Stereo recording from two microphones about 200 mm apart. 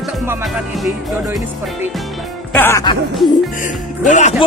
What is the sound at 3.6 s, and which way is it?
Speech, 35° left (ahead or behind).